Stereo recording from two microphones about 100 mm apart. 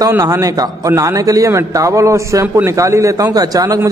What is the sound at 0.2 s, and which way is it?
A man's voice, 35° right (ahead or behind).